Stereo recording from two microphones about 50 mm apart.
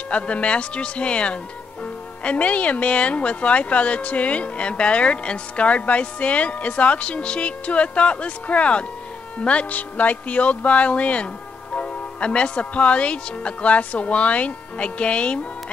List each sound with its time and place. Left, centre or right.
0.1 s speech: left